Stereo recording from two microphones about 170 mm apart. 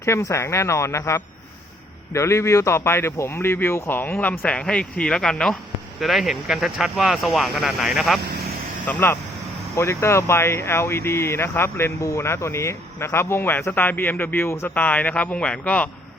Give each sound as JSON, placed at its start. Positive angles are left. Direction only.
{"t": 0.0, "sound": "speech", "side_deg": 15}
{"t": 8.9, "sound": "speech", "side_deg": 10}